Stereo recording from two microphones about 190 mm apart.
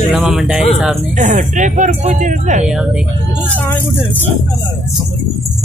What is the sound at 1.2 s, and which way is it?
Speech, 40° right (ahead or behind).